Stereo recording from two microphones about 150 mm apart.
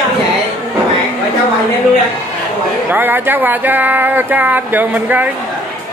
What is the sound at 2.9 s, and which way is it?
Speech, 15° right (ahead or behind).